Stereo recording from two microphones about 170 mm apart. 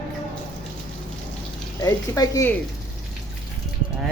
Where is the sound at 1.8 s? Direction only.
20° left (ahead or behind).